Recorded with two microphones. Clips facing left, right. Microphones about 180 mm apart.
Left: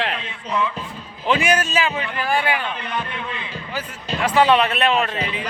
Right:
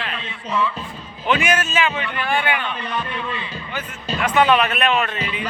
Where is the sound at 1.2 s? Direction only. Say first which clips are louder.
Left 1 dB; 30° left (ahead or behind).